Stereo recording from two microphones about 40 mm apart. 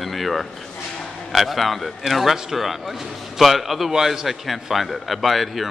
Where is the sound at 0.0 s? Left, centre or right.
Centre.